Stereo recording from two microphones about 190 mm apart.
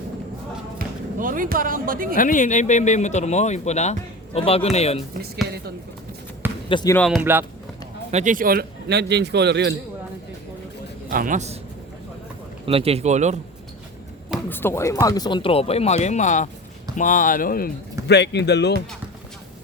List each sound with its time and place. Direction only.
0.8 s speech: 45° right (ahead or behind)
2.1 s speech: 45° left (ahead or behind)
6.7 s speech: 25° left (ahead or behind)
6.9 s speech: 5° left (ahead or behind)
7.2 s speech: 10° right (ahead or behind)
8.1 s a man's voice: 45° right (ahead or behind); by 9.7 s 65° right (ahead or behind)
11.1 s a man's voice: 45° right (ahead or behind)
12.6 s speech: 30° right (ahead or behind)
14.5 s speech: 10° left (ahead or behind); by 17.7 s 50° left (ahead or behind)
18.1 s speech: 60° left (ahead or behind)